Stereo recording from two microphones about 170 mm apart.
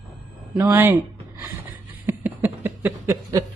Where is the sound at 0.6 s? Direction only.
15° right (ahead or behind).